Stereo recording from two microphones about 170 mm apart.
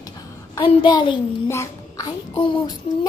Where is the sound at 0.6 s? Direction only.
30° left (ahead or behind).